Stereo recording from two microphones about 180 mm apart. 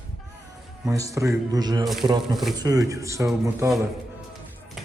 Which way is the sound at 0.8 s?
20° right (ahead or behind).